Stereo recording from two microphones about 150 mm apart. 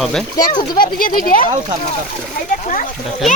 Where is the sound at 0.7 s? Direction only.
70° left (ahead or behind).